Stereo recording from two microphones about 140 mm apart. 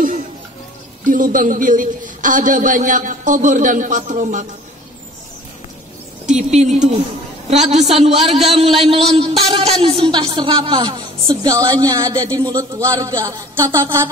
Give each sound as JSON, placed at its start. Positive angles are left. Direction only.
{"t": 1.0, "sound": "a woman's voice", "side_deg": -70}
{"t": 6.3, "sound": "a woman's voice", "side_deg": -55}